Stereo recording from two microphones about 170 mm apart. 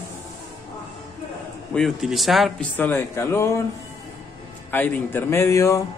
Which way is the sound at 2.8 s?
15° left (ahead or behind).